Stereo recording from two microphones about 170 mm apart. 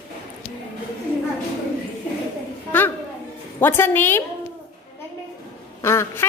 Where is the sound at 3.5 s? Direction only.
15° left (ahead or behind).